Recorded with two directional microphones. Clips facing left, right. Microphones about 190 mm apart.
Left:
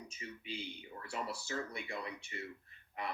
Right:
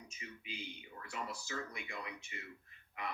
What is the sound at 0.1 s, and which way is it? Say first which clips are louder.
Speech: left 4 dB; 35° left (ahead or behind).